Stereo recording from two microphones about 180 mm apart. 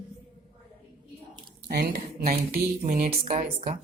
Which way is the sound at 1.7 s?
60° right (ahead or behind).